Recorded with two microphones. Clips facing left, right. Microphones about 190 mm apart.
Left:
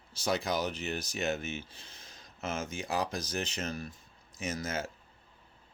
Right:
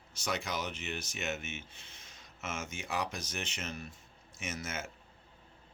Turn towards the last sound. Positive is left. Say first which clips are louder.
# left 5 dB
turn(degrees=35)  # may be behind; listen again after turning